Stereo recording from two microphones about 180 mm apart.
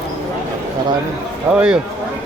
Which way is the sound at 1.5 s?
5° right (ahead or behind).